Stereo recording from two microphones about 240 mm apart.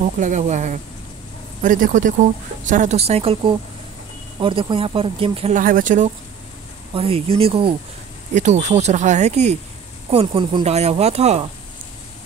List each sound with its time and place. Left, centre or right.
0.0 s speech: right
7.0 s speech: right